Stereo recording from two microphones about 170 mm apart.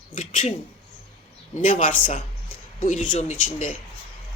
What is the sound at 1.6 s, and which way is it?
A man's voice, 55° left (ahead or behind).